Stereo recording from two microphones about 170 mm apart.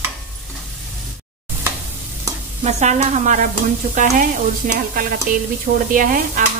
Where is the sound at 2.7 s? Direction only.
40° right (ahead or behind).